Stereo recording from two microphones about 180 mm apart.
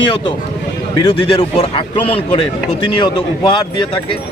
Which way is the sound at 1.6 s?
30° left (ahead or behind).